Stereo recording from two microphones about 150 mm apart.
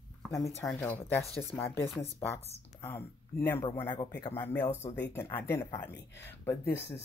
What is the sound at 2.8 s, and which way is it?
Speech, 15° left (ahead or behind).